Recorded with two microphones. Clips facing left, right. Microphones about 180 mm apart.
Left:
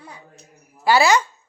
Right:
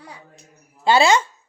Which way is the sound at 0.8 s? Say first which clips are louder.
Even; 25° right (ahead or behind).